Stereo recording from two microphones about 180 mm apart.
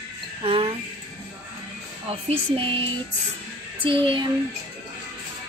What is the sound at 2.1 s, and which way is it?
Speech, 35° right (ahead or behind).